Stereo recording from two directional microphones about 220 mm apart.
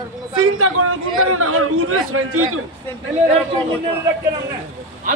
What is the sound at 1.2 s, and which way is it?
A man's voice, 80° right.